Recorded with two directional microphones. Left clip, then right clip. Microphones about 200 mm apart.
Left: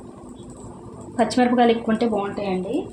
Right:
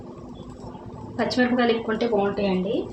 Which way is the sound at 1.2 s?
35° left (ahead or behind).